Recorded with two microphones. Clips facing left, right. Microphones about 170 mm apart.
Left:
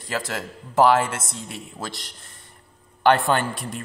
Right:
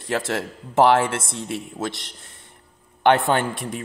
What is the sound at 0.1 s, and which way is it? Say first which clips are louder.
Speech: right 4 dB; 25° right (ahead or behind).